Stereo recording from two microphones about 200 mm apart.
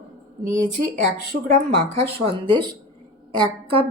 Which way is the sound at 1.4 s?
35° right (ahead or behind).